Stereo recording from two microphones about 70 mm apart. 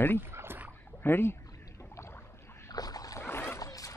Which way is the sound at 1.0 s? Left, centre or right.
Left.